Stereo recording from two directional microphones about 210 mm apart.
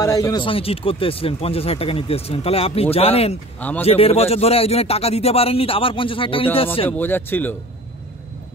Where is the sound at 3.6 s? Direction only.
10° left (ahead or behind).